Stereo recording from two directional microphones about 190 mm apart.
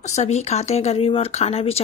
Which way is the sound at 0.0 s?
35° left (ahead or behind).